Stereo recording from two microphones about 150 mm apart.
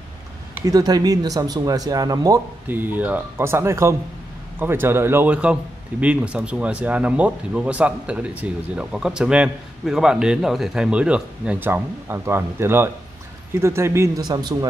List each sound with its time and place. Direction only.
0.6 s speech: 25° right (ahead or behind)
2.7 s speech: 10° right (ahead or behind)